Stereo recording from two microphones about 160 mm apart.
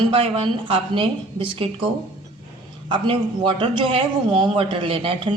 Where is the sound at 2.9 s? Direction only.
30° right (ahead or behind).